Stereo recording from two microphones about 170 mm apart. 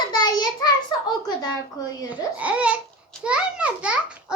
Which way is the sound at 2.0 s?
10° right (ahead or behind).